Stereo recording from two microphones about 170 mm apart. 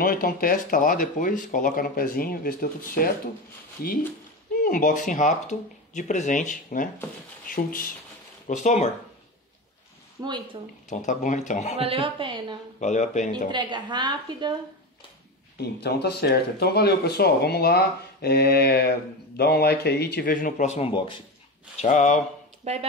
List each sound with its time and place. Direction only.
0.0 s speech: 55° left (ahead or behind)
4.6 s speech: 55° left (ahead or behind)
8.5 s speech: 45° left (ahead or behind)
10.2 s a woman's voice: 25° right (ahead or behind)
10.9 s speech: 45° left (ahead or behind)
11.8 s a woman's voice: 30° right (ahead or behind)
12.8 s speech: 45° left (ahead or behind)
13.5 s a woman's voice: 25° right (ahead or behind)
15.5 s speech: 70° left (ahead or behind); by 21.2 s 30° left (ahead or behind)
21.7 s speech: 45° left (ahead or behind)
22.7 s speech: 40° right (ahead or behind)